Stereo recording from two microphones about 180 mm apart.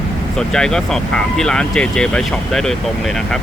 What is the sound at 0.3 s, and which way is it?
Speech, 5° left (ahead or behind).